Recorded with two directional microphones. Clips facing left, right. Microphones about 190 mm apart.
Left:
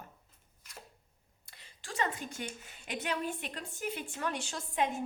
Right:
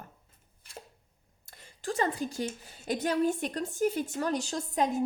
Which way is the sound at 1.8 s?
35° right (ahead or behind).